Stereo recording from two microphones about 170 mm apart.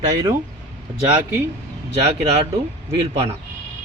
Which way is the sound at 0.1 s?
20° right (ahead or behind).